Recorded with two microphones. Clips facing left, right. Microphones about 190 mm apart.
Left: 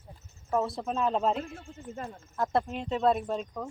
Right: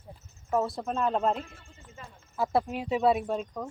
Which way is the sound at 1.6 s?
55° left (ahead or behind).